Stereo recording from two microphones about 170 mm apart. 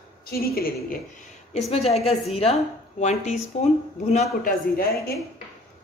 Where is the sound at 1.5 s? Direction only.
35° left (ahead or behind); by 5.1 s 60° left (ahead or behind).